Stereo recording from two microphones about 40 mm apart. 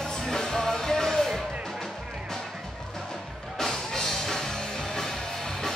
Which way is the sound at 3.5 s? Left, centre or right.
Centre.